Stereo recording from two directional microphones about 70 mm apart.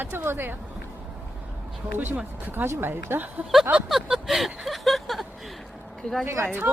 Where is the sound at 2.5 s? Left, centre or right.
Right.